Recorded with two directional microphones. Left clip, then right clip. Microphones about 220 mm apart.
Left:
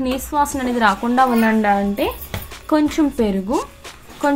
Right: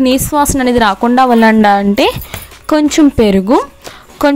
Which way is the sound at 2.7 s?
35° right (ahead or behind).